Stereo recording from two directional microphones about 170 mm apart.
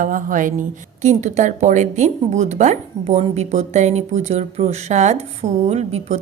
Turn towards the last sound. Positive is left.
turn(degrees=-40)  # may be behind; listen again after turning